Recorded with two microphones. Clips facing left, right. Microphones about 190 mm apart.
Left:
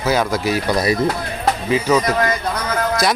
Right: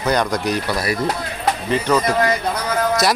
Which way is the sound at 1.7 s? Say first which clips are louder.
Left 2 dB; 5° left (ahead or behind).